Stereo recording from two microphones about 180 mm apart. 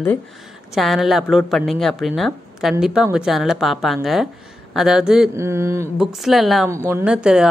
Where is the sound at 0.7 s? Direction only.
Centre (ahead or behind).